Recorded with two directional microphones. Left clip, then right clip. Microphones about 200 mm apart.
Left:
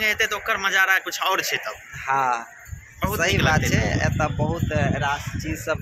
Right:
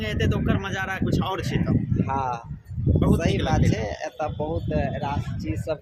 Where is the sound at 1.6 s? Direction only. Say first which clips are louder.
Left 1 dB; 10° left (ahead or behind).